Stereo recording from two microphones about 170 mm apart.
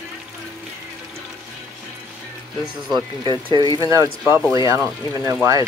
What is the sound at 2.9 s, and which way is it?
Speech, 25° right (ahead or behind).